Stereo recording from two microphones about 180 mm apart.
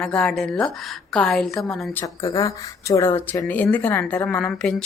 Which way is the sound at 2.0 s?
20° left (ahead or behind).